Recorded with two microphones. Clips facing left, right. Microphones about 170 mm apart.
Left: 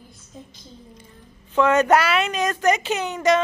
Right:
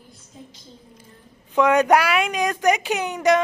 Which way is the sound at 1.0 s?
15° right (ahead or behind).